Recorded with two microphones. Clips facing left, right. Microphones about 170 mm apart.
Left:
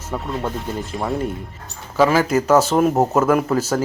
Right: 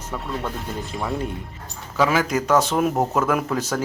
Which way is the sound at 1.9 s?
Centre (ahead or behind).